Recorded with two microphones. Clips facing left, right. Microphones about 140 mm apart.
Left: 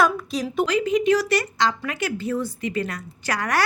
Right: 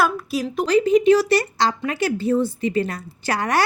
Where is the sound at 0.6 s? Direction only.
35° right (ahead or behind).